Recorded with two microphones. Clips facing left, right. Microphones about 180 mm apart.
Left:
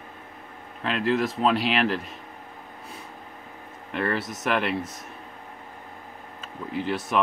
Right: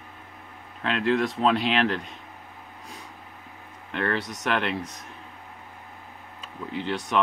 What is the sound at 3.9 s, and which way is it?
Speech, 5° left (ahead or behind).